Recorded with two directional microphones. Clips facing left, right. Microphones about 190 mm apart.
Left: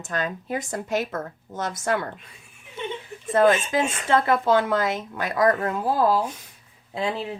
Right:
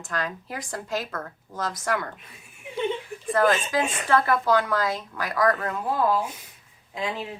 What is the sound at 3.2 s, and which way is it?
A woman's voice, 25° left (ahead or behind).